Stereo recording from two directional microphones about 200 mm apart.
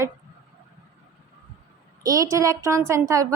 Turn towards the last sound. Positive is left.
turn(degrees=-15)  # may be behind; listen again after turning